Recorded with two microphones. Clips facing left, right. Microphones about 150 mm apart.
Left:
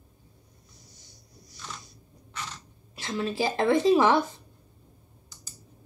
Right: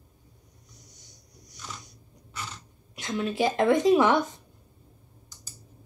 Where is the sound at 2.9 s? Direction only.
30° left (ahead or behind).